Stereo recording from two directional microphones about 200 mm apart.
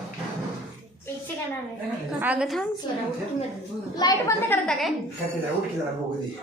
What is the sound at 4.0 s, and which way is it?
Speech, 15° left (ahead or behind).